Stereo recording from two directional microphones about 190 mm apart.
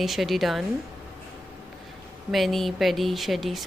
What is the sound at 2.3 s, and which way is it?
Speech, centre (ahead or behind).